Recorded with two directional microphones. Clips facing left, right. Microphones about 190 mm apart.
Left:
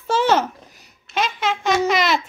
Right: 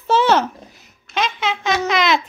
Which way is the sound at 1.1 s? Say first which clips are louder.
Even; 10° left (ahead or behind).